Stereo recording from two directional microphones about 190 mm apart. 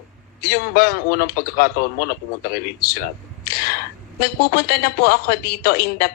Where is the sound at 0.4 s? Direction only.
50° left (ahead or behind).